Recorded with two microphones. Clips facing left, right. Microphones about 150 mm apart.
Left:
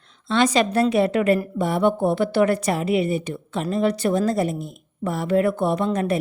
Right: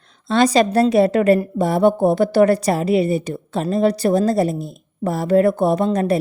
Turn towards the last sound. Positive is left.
turn(degrees=-35)  # may be behind; listen again after turning